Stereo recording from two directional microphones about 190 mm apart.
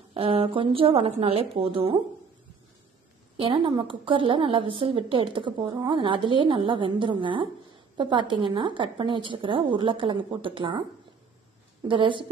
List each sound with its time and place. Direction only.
0.1 s a woman's voice: 30° right (ahead or behind)
3.3 s a woman's voice: 25° right (ahead or behind)